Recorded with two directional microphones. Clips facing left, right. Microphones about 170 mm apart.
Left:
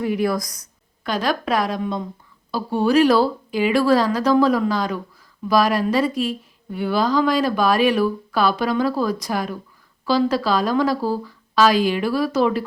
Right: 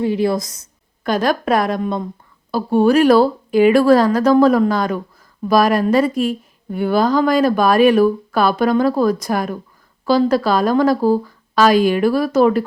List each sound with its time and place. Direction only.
0.0 s a woman's voice: 25° right (ahead or behind)
1.0 s speech: 50° right (ahead or behind)